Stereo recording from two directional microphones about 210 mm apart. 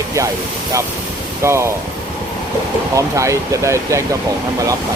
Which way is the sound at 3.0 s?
15° right (ahead or behind).